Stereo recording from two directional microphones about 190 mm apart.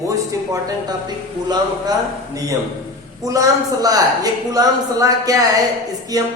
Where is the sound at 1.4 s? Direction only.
20° right (ahead or behind).